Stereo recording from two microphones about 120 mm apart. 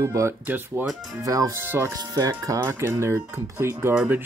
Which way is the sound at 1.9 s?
30° right (ahead or behind).